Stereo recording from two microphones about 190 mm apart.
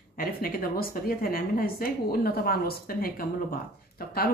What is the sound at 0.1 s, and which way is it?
A woman's voice, 50° left (ahead or behind).